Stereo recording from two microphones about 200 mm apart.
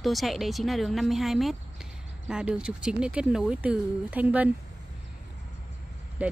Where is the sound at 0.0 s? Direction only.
Centre (ahead or behind).